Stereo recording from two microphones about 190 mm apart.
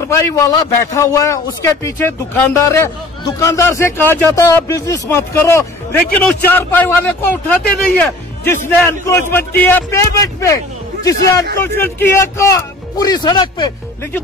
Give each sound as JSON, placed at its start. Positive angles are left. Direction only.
{"t": 0.1, "sound": "a man's voice", "side_deg": 15}